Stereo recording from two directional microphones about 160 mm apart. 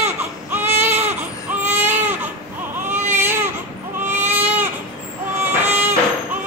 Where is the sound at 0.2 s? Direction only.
15° right (ahead or behind).